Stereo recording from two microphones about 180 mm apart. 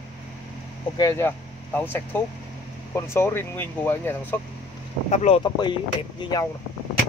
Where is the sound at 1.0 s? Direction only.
15° left (ahead or behind).